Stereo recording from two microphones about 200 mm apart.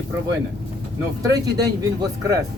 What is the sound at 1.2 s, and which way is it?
Speech, 15° right (ahead or behind).